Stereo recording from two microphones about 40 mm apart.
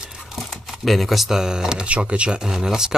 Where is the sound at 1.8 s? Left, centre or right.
Right.